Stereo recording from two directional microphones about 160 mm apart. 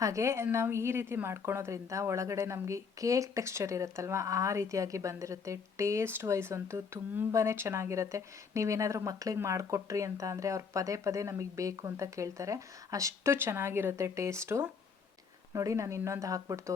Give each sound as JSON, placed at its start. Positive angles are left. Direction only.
{"t": 0.0, "sound": "a woman's voice", "side_deg": -20}